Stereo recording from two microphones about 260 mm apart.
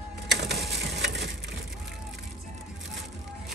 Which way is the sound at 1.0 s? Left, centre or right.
Right.